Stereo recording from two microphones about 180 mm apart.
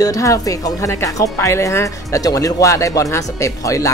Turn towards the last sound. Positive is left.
turn(degrees=20)  # may be behind; listen again after turning